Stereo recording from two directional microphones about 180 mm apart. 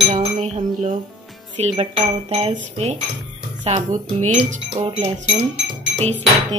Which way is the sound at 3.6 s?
35° right (ahead or behind).